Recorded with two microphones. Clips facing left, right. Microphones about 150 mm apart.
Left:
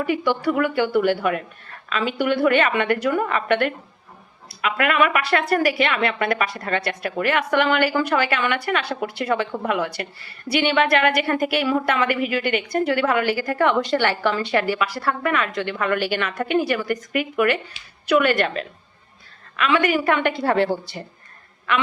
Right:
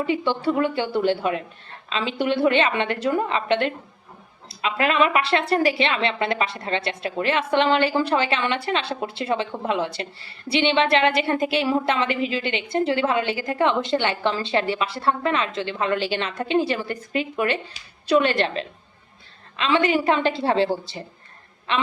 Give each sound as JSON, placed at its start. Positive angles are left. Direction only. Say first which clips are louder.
{"t": 0.0, "sound": "a woman's voice", "louder": "left 1 dB", "side_deg": -25}